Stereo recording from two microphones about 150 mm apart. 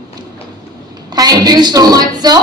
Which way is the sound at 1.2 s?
25° right (ahead or behind).